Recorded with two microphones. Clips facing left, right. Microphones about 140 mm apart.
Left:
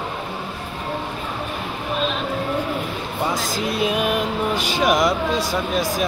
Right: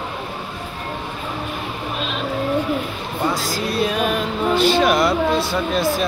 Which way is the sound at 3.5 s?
20° left (ahead or behind).